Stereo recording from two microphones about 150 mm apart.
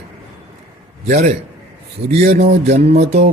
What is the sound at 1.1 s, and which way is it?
Speech, 50° right (ahead or behind).